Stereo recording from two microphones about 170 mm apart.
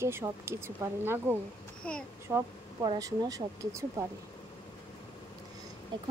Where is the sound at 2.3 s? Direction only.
15° right (ahead or behind).